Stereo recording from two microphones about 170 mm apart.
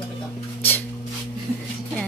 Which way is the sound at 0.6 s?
10° left (ahead or behind).